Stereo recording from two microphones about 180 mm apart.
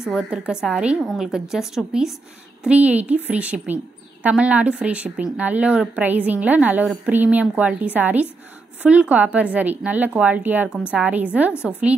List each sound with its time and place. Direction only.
0.0 s a woman's voice: 5° right (ahead or behind)